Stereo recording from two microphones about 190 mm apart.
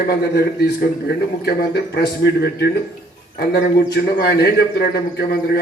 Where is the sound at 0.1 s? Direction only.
55° left (ahead or behind).